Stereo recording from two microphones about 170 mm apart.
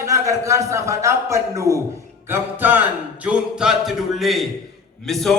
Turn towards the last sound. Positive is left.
turn(degrees=0)  # may be behind; listen again after turning